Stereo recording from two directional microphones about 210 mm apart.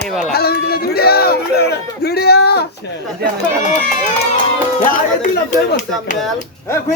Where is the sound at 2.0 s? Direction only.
50° left (ahead or behind).